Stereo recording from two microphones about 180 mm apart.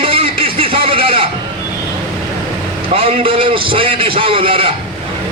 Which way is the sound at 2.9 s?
30° right (ahead or behind).